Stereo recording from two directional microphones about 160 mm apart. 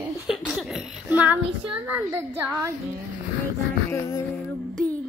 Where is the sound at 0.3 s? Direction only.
Centre (ahead or behind).